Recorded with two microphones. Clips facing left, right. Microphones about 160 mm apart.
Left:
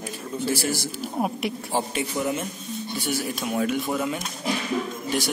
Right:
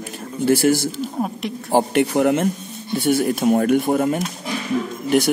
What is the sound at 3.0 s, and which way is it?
A man's voice, 55° right (ahead or behind).